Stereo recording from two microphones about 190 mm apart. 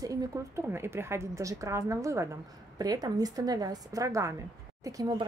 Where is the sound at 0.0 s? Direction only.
15° right (ahead or behind).